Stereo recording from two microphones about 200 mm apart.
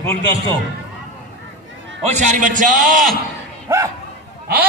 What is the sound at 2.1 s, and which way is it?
Speech, 35° right (ahead or behind).